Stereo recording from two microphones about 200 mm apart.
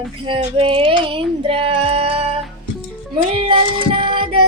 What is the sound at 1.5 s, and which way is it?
Music, 25° right (ahead or behind).